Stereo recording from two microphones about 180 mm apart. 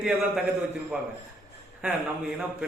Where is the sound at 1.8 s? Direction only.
5° right (ahead or behind).